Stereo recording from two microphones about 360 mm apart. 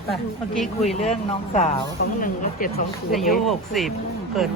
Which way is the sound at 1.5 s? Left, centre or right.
Centre.